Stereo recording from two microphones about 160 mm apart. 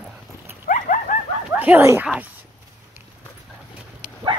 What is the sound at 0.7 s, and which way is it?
Dog, 55° left (ahead or behind).